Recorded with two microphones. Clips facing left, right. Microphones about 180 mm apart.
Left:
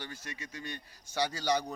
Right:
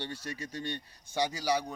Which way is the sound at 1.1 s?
15° right (ahead or behind).